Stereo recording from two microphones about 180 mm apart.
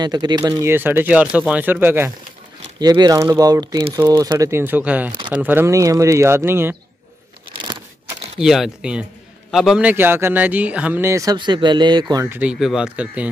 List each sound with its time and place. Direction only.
0.0 s a man's voice: 25° right (ahead or behind)
2.8 s a man's voice: 20° right (ahead or behind)
7.5 s a sound: 25° right (ahead or behind)
8.4 s a man's voice: centre (ahead or behind)